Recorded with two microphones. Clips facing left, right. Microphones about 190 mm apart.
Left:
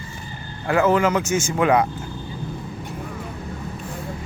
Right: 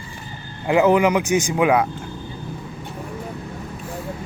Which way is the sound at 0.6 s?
15° right (ahead or behind).